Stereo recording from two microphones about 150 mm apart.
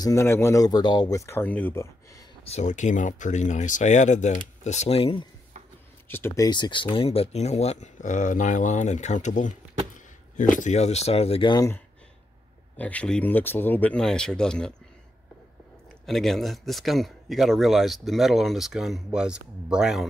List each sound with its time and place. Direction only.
0.0 s speech: 20° left (ahead or behind)
2.4 s speech: 50° left (ahead or behind)
6.0 s speech: 15° left (ahead or behind); by 9.6 s 55° left (ahead or behind)
10.6 s speech: 50° left (ahead or behind)
11.5 s speech: 20° left (ahead or behind)
12.7 s speech: 10° left (ahead or behind)
16.1 s speech: centre (ahead or behind)